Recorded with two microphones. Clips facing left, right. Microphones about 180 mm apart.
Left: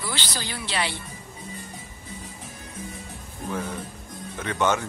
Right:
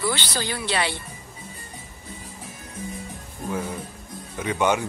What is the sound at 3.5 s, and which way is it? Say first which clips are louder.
Music: right 2 dB; 10° right (ahead or behind).